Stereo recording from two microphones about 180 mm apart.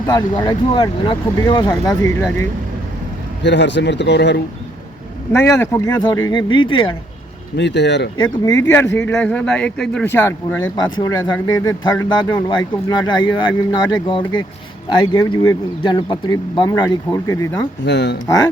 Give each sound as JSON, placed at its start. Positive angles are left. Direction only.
{"t": 0.1, "sound": "speech", "side_deg": 25}
{"t": 3.4, "sound": "speech", "side_deg": 75}
{"t": 5.3, "sound": "speech", "side_deg": 15}
{"t": 7.5, "sound": "speech", "side_deg": 75}
{"t": 8.2, "sound": "speech", "side_deg": 20}
{"t": 17.8, "sound": "speech", "side_deg": 75}